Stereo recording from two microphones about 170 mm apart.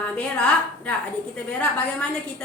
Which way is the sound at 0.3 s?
5° left (ahead or behind).